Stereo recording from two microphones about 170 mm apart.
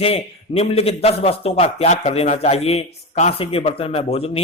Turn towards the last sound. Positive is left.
turn(degrees=35)  # may be behind; listen again after turning